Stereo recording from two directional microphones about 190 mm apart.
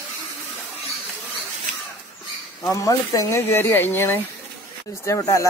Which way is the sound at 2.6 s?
15° left (ahead or behind).